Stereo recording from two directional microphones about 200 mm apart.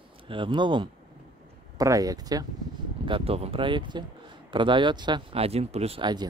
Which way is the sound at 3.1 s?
30° right (ahead or behind).